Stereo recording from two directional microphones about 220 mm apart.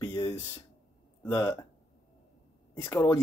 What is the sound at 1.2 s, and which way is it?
Speech, 10° left (ahead or behind).